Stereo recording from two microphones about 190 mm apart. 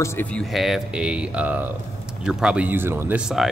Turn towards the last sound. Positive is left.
turn(degrees=-5)  # may be behind; listen again after turning